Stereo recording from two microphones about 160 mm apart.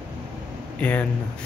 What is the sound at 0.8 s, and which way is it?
Speech, 10° left (ahead or behind).